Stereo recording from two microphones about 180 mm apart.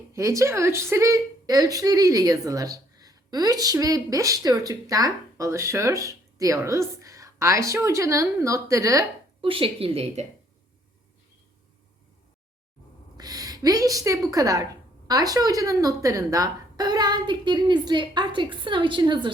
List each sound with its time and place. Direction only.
0.1 s a woman's voice: 15° right (ahead or behind)
9.4 s a woman's voice: 30° right (ahead or behind)
13.1 s a woman's voice: 20° right (ahead or behind)